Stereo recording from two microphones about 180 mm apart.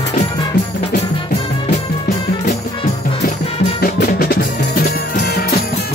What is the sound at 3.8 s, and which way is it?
Music, 55° left (ahead or behind).